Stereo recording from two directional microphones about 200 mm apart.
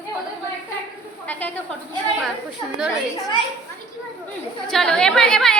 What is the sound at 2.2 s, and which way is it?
A woman's voice, 5° right (ahead or behind).